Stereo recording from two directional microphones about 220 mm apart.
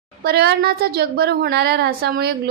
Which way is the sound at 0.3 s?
45° right (ahead or behind).